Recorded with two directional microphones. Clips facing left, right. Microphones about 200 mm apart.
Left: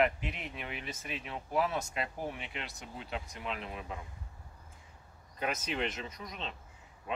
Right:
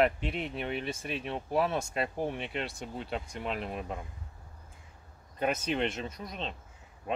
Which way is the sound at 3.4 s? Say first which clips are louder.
Right 6 dB; 45° right (ahead or behind).